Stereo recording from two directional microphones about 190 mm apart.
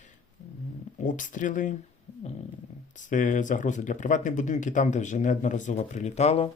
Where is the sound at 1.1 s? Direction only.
45° left (ahead or behind).